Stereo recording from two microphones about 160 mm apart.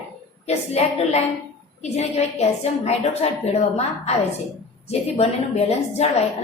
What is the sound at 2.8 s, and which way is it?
A woman's voice, 45° left (ahead or behind).